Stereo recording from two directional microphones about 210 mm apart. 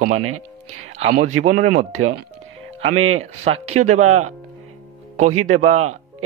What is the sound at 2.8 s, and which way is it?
Speech, 90° right.